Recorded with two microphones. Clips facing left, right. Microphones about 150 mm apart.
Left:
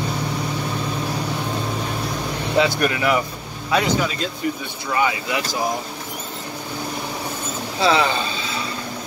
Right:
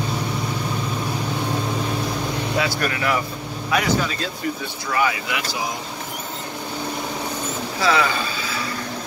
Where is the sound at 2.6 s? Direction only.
20° left (ahead or behind).